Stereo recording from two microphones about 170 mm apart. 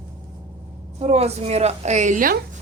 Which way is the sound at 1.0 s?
40° right (ahead or behind).